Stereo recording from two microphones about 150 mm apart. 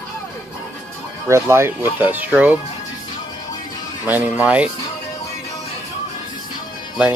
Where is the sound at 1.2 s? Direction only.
15° right (ahead or behind).